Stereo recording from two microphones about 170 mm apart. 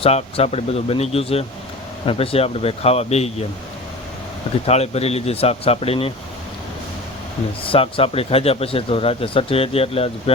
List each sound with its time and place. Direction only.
0.0 s speech: 35° left (ahead or behind)
4.6 s speech: 40° left (ahead or behind)
7.6 s speech: 30° left (ahead or behind)